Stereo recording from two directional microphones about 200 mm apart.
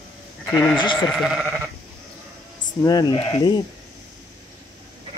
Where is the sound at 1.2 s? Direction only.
Centre (ahead or behind).